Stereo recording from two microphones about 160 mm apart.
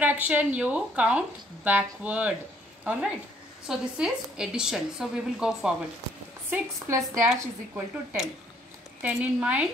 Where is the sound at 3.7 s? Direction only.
5° right (ahead or behind).